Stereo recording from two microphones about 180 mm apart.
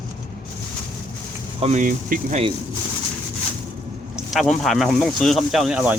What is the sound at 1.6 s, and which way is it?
Speech, 40° right (ahead or behind).